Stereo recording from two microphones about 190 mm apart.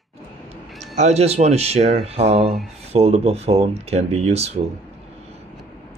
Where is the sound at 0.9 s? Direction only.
35° right (ahead or behind).